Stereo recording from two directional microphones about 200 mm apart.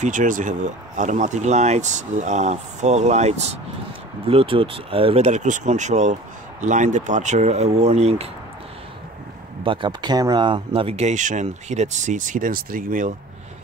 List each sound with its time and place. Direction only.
0.0 s speech: 40° right (ahead or behind)
9.7 s speech: 25° right (ahead or behind); by 13.1 s 45° right (ahead or behind)